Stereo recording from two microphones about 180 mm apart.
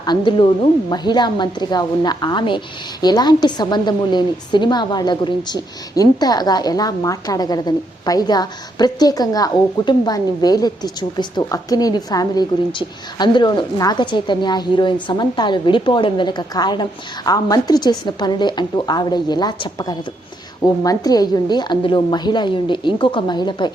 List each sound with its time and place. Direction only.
0.0 s a woman's voice: 25° left (ahead or behind)